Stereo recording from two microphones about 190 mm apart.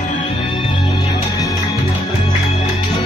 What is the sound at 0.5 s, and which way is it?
Music, 25° left (ahead or behind).